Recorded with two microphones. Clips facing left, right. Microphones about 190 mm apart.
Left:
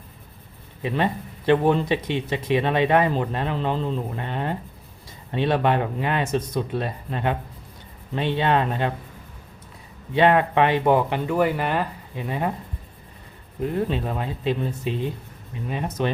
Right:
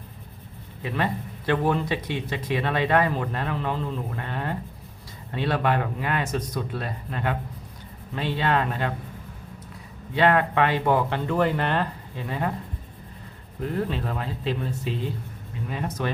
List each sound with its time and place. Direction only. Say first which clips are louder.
0.8 s speech: left 3 dB; 20° left (ahead or behind)
10.2 s speech: left 3 dB; 20° left (ahead or behind)
13.6 s speech: left 3 dB; 20° left (ahead or behind)